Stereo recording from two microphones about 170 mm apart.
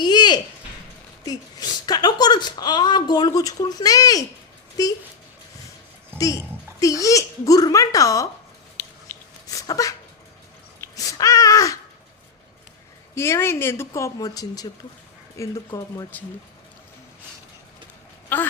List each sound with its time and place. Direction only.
0.0 s a sound: 25° left (ahead or behind)
4.8 s speech: 20° left (ahead or behind)
6.1 s speech: 20° left (ahead or behind)
9.5 s a sound: 20° left (ahead or behind)
10.8 s babbling: 20° left (ahead or behind)
13.1 s speech: 15° left (ahead or behind)
18.3 s speech: 10° left (ahead or behind)